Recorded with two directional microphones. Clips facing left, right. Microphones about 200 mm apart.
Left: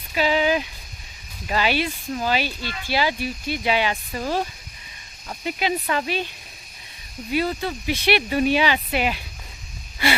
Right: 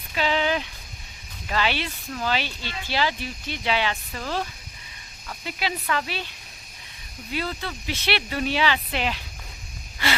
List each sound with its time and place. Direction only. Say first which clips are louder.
0.1 s a sound: left 4 dB; 10° left (ahead or behind)
1.5 s speech: left 4 dB; 10° left (ahead or behind)
5.5 s speech: left 4 dB; 20° left (ahead or behind)
7.3 s speech: left 6 dB; 15° left (ahead or behind)